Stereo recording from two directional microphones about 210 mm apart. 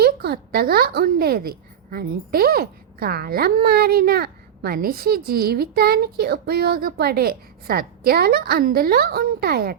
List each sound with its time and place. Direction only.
0.0 s a woman's voice: 50° right (ahead or behind)